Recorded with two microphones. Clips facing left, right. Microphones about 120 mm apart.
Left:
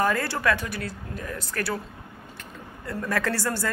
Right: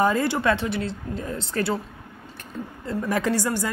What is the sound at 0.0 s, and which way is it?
Speech, 20° right (ahead or behind).